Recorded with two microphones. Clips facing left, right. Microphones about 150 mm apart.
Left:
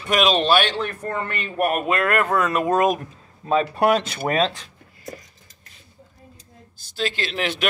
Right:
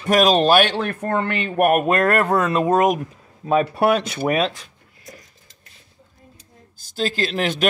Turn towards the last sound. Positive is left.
turn(degrees=-40)  # may be behind; listen again after turning